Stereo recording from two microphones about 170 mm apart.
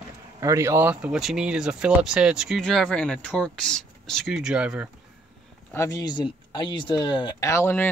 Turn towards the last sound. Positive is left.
turn(degrees=15)  # may be behind; listen again after turning